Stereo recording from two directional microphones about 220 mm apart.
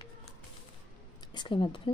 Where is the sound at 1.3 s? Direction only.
20° left (ahead or behind).